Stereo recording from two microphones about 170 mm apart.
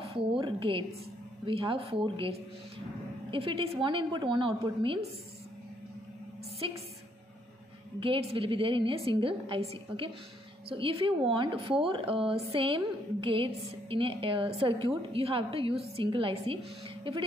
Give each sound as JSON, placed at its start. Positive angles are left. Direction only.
{"t": 0.0, "sound": "a woman's voice", "side_deg": -30}
{"t": 6.6, "sound": "a woman's voice", "side_deg": -30}
{"t": 8.0, "sound": "a woman's voice", "side_deg": -35}